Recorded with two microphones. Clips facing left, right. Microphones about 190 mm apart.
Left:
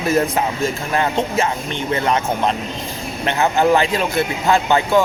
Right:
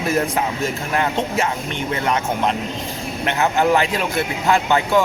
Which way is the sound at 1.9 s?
30° left (ahead or behind).